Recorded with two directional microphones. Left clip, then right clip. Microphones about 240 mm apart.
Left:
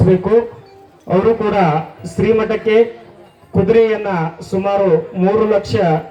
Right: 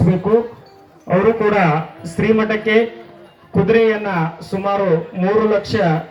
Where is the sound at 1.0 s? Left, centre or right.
Left.